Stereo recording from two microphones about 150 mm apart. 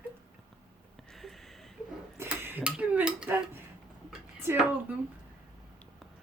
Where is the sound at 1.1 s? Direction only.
Centre (ahead or behind).